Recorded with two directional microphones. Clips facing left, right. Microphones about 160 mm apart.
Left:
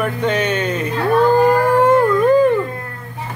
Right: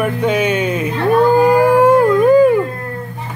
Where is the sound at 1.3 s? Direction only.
10° right (ahead or behind).